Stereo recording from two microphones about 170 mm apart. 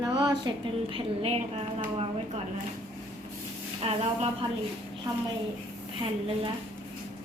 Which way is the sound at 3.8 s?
35° right (ahead or behind).